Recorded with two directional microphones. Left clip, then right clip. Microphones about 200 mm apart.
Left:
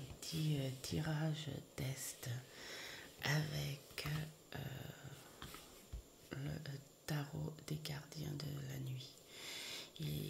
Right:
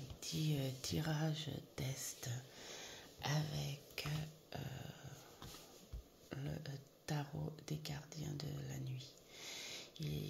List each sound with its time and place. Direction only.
0.2 s speech: centre (ahead or behind)
6.3 s speech: 5° left (ahead or behind)